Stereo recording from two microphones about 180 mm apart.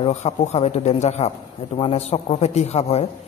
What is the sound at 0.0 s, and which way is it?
A man's voice, 40° left (ahead or behind).